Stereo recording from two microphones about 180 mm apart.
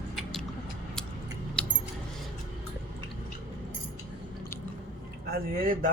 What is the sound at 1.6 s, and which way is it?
Keys jangling, 5° left (ahead or behind).